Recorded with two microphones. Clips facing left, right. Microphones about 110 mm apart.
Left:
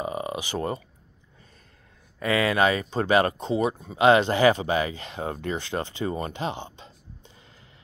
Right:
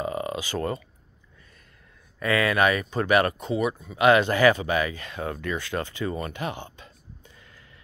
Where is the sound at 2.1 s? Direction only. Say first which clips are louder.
Even; 25° left (ahead or behind).